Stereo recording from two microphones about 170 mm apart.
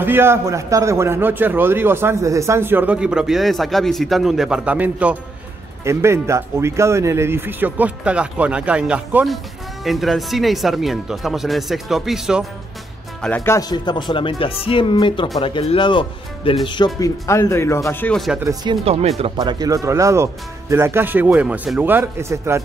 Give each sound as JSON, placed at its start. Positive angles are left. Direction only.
{"t": 0.0, "sound": "a man's voice", "side_deg": -15}
{"t": 13.2, "sound": "speech", "side_deg": 10}
{"t": 13.6, "sound": "speech", "side_deg": 25}
{"t": 18.1, "sound": "speech", "side_deg": 0}
{"t": 18.4, "sound": "speech", "side_deg": -20}
{"t": 18.9, "sound": "speech", "side_deg": -35}
{"t": 19.3, "sound": "a man's voice", "side_deg": -20}